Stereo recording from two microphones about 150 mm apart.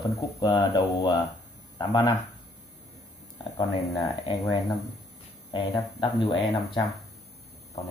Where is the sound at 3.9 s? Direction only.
25° left (ahead or behind).